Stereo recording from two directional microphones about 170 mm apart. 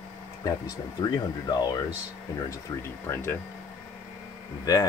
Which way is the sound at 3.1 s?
15° left (ahead or behind).